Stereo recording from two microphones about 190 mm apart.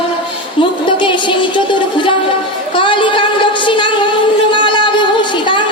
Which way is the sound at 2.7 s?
25° left (ahead or behind).